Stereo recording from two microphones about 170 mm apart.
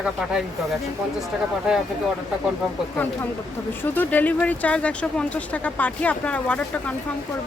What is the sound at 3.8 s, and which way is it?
Speech, 10° left (ahead or behind).